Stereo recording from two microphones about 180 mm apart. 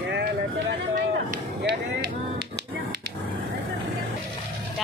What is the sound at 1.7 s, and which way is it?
Speech, 60° right (ahead or behind).